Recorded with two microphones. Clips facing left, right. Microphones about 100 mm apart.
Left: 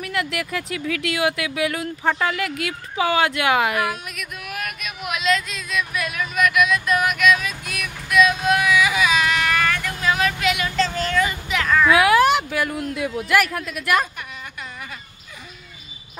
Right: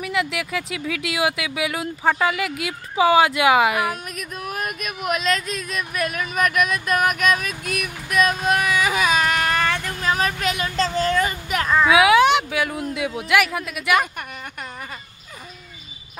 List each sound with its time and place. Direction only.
0.0 s speech: 5° right (ahead or behind)
3.9 s speech: 40° right (ahead or behind)
11.9 s speech: 5° right (ahead or behind)